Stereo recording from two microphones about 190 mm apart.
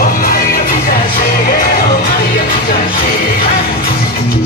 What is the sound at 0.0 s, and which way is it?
Music, 50° left (ahead or behind).